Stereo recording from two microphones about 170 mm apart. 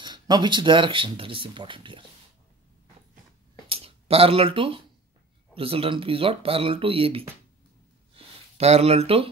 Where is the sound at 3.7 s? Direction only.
35° right (ahead or behind).